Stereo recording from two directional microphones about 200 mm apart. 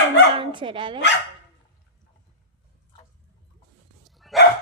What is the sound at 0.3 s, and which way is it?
Speech, 25° right (ahead or behind).